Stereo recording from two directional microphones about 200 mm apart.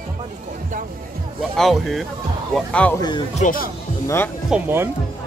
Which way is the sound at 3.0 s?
20° left (ahead or behind).